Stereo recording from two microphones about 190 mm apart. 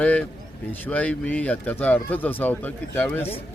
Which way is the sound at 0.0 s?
5° left (ahead or behind).